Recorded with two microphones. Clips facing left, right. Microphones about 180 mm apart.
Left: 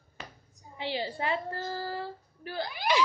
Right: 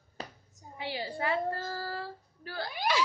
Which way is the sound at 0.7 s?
25° left (ahead or behind).